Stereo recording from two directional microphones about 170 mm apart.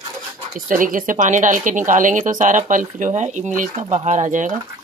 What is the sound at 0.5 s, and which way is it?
A woman's voice, 50° right (ahead or behind).